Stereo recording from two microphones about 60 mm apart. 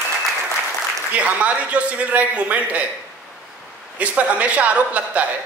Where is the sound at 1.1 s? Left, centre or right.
Right.